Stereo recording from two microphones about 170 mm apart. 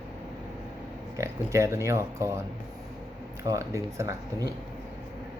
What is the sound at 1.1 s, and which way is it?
Speech, 15° right (ahead or behind).